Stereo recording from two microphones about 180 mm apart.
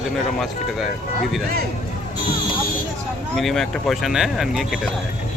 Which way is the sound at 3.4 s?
Centre (ahead or behind).